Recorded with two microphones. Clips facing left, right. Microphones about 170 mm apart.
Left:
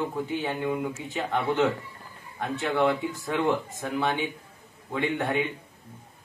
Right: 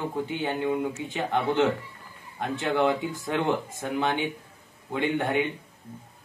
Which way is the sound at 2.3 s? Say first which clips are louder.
Right 1 dB; 15° right (ahead or behind).